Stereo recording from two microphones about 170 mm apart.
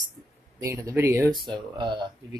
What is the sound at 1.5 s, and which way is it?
Speech, 25° right (ahead or behind).